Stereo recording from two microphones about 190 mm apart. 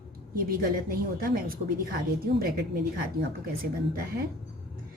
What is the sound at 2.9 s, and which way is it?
Speech, 50° right (ahead or behind).